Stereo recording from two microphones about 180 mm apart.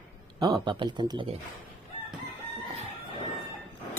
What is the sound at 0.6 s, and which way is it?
Speech, 25° right (ahead or behind).